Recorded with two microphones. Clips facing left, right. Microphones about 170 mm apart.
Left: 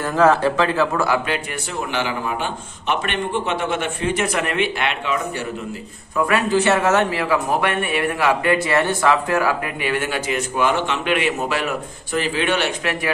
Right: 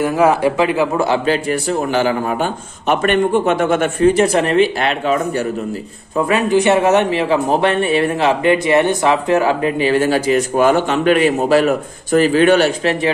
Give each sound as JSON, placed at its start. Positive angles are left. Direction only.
{"t": 0.0, "sound": "a man's voice", "side_deg": -10}
{"t": 1.0, "sound": "a man's voice", "side_deg": -30}
{"t": 6.1, "sound": "speech", "side_deg": -20}